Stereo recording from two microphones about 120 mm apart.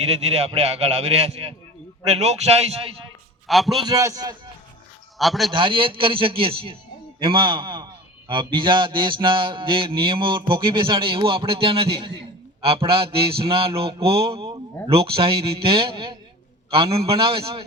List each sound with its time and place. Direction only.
0.0 s a man's voice: 60° right (ahead or behind)
3.4 s a man's voice: centre (ahead or behind)
3.8 s a man's voice: 30° right (ahead or behind)
5.1 s a man's voice: centre (ahead or behind)
5.5 s a sound: 45° right (ahead or behind)
7.2 s a man's voice: 45° right (ahead or behind)
8.3 s a sound: 45° right (ahead or behind)